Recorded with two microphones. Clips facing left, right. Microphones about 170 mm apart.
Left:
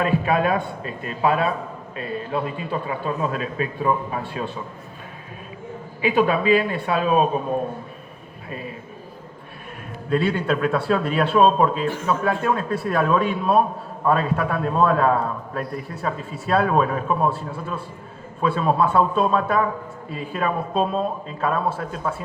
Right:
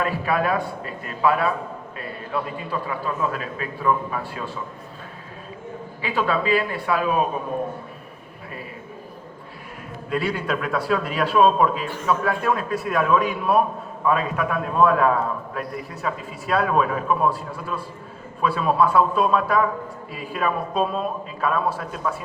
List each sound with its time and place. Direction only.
0.0 s a man's voice: 20° left (ahead or behind)
6.0 s a man's voice: 20° left (ahead or behind)
10.1 s a man's voice: 25° left (ahead or behind)